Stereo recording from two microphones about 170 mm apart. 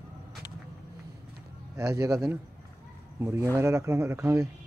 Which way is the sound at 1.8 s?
20° right (ahead or behind).